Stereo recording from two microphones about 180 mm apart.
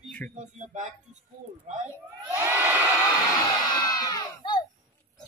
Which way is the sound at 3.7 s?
20° left (ahead or behind).